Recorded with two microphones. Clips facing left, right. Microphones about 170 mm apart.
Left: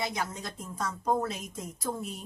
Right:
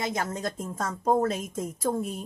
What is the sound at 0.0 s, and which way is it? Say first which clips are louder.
A woman's voice: right 4 dB; 50° right (ahead or behind).